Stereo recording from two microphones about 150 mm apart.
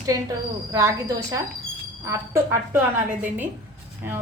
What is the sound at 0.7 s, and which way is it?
A woman's voice, 20° right (ahead or behind).